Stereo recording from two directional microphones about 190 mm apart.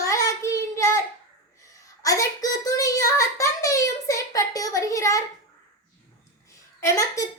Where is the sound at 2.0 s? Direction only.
20° left (ahead or behind).